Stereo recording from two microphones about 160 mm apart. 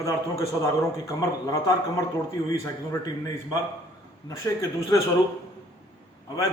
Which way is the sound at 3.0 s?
25° left (ahead or behind).